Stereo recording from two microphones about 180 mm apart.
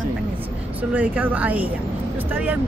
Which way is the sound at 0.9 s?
10° right (ahead or behind).